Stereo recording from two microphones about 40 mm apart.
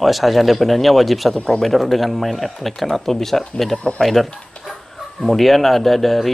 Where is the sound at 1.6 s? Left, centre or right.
Centre.